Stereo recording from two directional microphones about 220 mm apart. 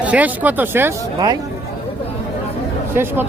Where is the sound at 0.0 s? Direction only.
5° right (ahead or behind).